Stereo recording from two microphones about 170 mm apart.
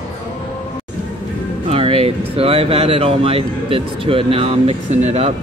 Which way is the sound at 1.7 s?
35° right (ahead or behind).